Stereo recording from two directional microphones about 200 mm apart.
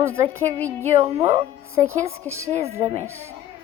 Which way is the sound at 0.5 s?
10° left (ahead or behind).